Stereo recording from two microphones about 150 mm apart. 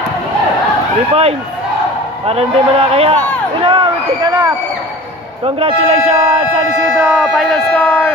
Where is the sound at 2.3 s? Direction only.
40° right (ahead or behind).